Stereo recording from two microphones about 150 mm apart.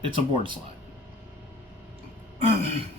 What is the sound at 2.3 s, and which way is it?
Throat clearing, 45° right (ahead or behind).